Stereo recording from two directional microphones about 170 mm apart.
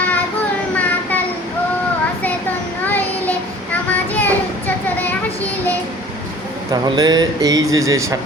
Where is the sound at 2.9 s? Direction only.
10° left (ahead or behind).